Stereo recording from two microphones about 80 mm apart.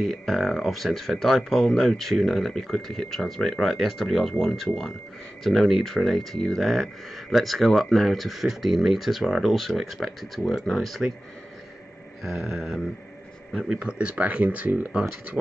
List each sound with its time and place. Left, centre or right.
0.0 s speech: centre
12.2 s mantra: centre
12.5 s speech: centre
13.5 s speech: centre